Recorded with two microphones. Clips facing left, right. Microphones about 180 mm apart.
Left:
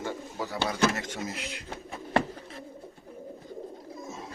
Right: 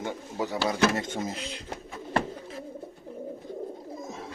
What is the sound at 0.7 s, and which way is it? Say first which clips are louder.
Speech: right 1 dB; 25° right (ahead or behind).